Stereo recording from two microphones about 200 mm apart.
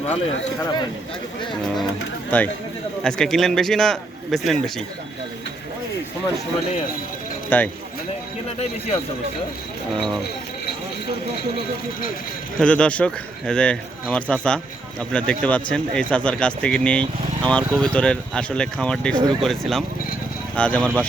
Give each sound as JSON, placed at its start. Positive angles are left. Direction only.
{"t": 0.6, "sound": "speech", "side_deg": 20}
{"t": 2.3, "sound": "speech", "side_deg": 5}
{"t": 7.5, "sound": "speech", "side_deg": 10}
{"t": 8.4, "sound": "speech", "side_deg": 30}
{"t": 12.5, "sound": "speech", "side_deg": 5}